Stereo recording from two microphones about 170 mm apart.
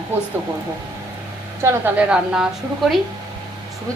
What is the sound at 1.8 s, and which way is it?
Speech, 5° right (ahead or behind).